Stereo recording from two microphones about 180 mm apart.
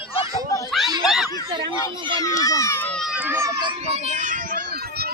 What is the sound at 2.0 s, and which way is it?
Speech, 25° right (ahead or behind).